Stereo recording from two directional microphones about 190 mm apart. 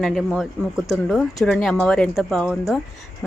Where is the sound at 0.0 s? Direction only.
Centre (ahead or behind).